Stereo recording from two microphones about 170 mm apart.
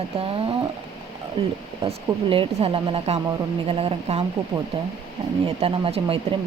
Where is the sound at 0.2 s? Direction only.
35° right (ahead or behind).